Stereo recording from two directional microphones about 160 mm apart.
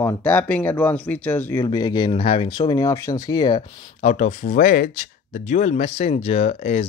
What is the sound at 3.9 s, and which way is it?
Speech, 45° left (ahead or behind).